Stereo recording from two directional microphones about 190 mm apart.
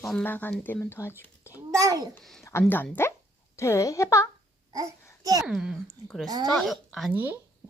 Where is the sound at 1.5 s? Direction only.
20° right (ahead or behind).